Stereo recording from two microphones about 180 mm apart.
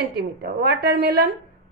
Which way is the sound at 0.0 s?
60° right (ahead or behind).